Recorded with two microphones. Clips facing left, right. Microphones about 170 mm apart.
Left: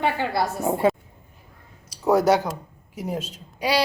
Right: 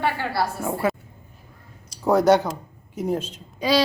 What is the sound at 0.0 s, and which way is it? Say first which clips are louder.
Speech: left 1 dB; 20° left (ahead or behind).